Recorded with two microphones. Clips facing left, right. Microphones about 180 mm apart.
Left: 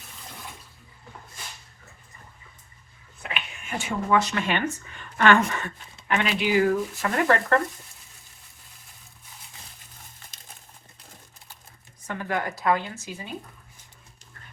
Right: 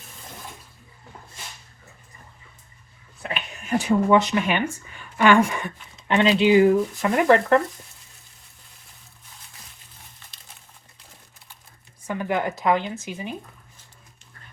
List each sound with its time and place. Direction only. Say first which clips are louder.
3.2 s a sound: right 6 dB; 40° right (ahead or behind)
4.1 s speech: even; 20° right (ahead or behind)
12.0 s speech: right 4 dB; 15° right (ahead or behind)